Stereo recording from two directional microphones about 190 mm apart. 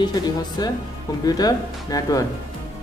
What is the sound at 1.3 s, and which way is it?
Speech, 20° left (ahead or behind).